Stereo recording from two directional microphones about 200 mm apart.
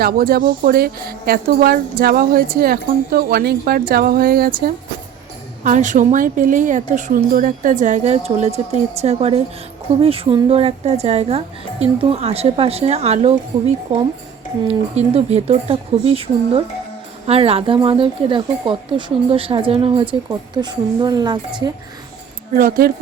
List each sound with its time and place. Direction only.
0.0 s a woman's voice: 50° right (ahead or behind); by 21.7 s 20° right (ahead or behind)
22.5 s speech: 45° right (ahead or behind)